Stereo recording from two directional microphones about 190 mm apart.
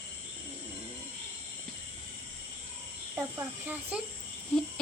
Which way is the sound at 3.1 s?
10° right (ahead or behind).